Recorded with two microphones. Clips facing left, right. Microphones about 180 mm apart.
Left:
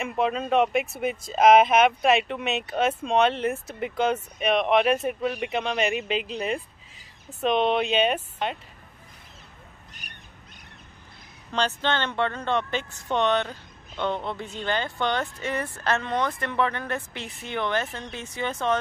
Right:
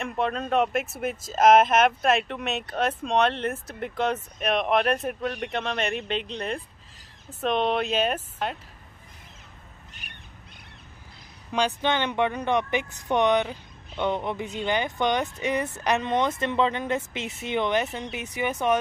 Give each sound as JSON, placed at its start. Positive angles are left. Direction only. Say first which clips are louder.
{"t": 0.0, "sound": "speech", "louder": "left 2 dB", "side_deg": 5}
{"t": 11.5, "sound": "speech", "louder": "right 1 dB", "side_deg": -15}